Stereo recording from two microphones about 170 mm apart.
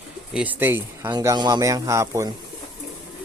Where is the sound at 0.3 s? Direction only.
10° right (ahead or behind).